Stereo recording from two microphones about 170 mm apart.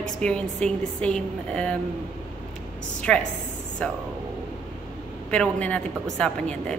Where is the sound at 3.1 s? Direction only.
5° left (ahead or behind).